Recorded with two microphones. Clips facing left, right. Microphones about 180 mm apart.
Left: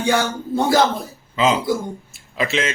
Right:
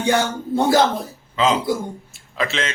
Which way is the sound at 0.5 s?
20° right (ahead or behind).